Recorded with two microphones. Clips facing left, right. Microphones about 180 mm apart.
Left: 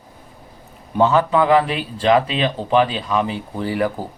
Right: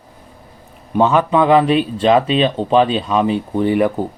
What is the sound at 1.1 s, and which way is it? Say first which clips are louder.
Speech: right 3 dB; 20° right (ahead or behind).